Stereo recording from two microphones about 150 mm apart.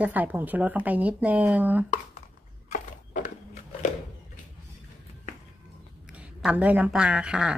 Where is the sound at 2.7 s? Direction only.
55° left (ahead or behind).